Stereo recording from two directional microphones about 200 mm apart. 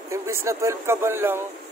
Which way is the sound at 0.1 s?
15° right (ahead or behind).